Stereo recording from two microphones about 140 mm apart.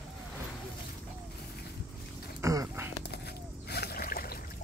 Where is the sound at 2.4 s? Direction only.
20° right (ahead or behind).